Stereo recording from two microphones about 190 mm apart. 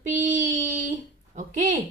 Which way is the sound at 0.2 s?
40° right (ahead or behind).